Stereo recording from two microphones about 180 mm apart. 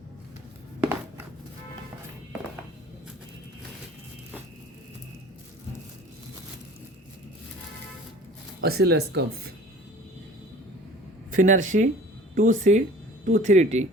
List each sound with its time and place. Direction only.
8.6 s speech: 60° right (ahead or behind)
11.3 s speech: 45° right (ahead or behind)